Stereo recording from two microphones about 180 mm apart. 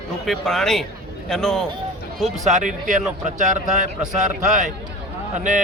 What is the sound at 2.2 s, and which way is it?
Speech, 45° right (ahead or behind).